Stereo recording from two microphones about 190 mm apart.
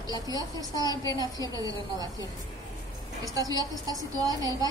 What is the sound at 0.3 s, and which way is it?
Speech, 20° right (ahead or behind).